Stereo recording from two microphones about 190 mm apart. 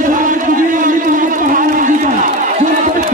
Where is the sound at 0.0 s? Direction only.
45° right (ahead or behind).